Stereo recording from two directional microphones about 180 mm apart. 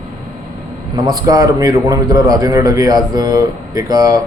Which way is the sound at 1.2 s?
20° right (ahead or behind).